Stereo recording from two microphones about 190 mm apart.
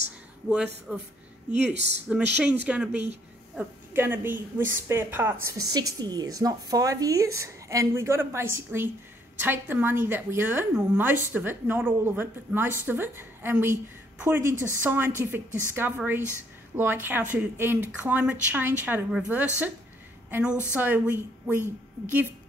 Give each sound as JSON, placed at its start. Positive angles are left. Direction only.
{"t": 0.9, "sound": "speech", "side_deg": -5}
{"t": 1.7, "sound": "speech", "side_deg": -65}
{"t": 2.0, "sound": "a woman's voice", "side_deg": -5}